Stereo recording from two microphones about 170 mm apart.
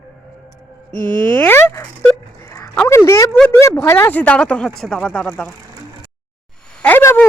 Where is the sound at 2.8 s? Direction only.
15° left (ahead or behind).